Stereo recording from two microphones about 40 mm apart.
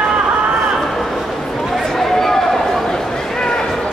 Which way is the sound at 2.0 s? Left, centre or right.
Centre.